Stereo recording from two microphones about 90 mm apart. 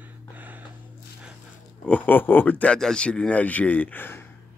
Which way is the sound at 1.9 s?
20° left (ahead or behind).